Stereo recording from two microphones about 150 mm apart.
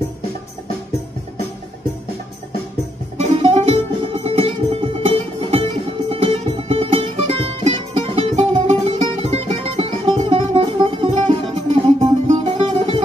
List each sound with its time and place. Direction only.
3.2 s music: 40° right (ahead or behind)